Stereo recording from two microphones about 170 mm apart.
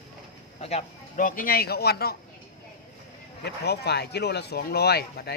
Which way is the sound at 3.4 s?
75° left (ahead or behind).